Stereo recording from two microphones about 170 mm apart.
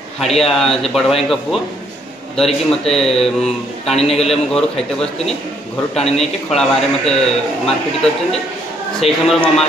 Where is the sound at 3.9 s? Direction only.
40° left (ahead or behind).